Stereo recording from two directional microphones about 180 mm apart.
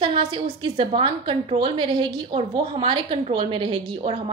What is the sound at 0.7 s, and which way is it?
A woman's voice, 30° right (ahead or behind).